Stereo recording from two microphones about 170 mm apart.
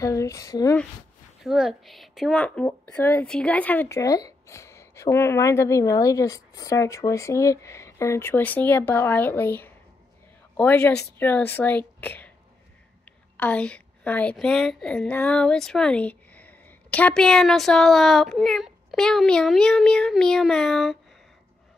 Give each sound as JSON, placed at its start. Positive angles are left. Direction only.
{"t": 0.0, "sound": "speech", "side_deg": 20}
{"t": 1.4, "sound": "a woman's voice", "side_deg": 0}
{"t": 13.4, "sound": "a woman's voice", "side_deg": 10}